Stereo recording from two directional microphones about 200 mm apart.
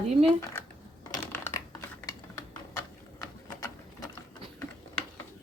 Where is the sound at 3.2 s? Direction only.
15° left (ahead or behind).